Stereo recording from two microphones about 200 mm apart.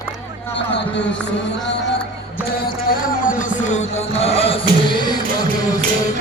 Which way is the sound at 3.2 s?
40° left (ahead or behind).